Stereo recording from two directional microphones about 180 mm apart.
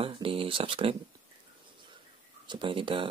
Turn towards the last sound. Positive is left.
turn(degrees=-30)  # may be behind; listen again after turning